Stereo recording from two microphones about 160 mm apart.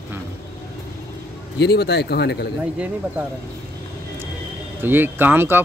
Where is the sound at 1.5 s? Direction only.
90° left.